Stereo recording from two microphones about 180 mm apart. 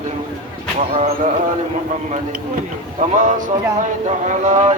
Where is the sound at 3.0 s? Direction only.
45° right (ahead or behind).